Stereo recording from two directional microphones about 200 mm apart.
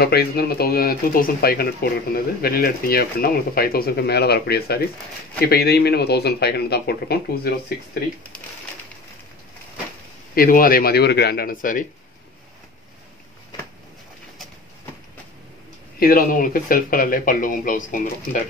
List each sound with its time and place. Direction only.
0.0 s speech: 50° left (ahead or behind)
10.3 s speech: 45° left (ahead or behind)
16.0 s speech: 45° left (ahead or behind)